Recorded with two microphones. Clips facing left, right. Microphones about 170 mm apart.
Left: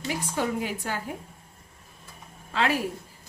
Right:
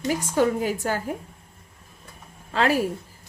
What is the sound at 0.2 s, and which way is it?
Speech, 45° right (ahead or behind).